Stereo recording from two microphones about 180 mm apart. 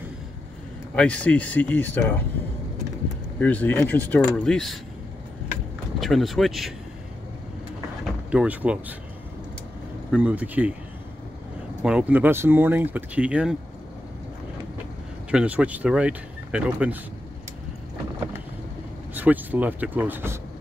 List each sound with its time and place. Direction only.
0.9 s speech: 5° left (ahead or behind)
3.3 s speech: 10° left (ahead or behind)
5.9 s speech: centre (ahead or behind)
8.3 s speech: 5° right (ahead or behind)
10.1 s speech: 10° right (ahead or behind)
11.8 s speech: 5° right (ahead or behind)
15.3 s speech: 5° right (ahead or behind)
19.1 s speech: 10° right (ahead or behind)